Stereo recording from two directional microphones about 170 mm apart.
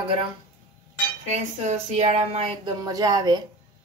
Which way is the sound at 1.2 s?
45° right (ahead or behind).